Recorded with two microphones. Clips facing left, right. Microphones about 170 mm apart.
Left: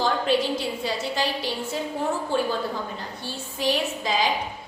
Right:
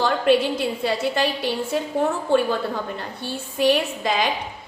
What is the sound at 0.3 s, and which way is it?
A woman's voice, 60° right (ahead or behind).